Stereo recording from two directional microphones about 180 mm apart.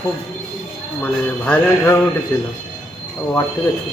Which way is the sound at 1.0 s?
10° left (ahead or behind).